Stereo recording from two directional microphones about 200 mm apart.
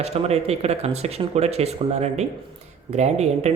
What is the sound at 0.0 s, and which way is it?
Speech, 30° right (ahead or behind).